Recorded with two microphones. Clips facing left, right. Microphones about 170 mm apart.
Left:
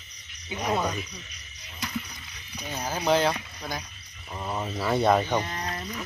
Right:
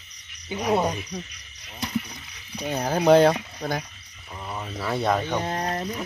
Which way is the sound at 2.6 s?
60° right (ahead or behind).